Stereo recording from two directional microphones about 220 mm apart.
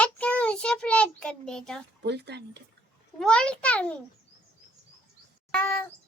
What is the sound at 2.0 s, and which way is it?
Speech, 50° right (ahead or behind).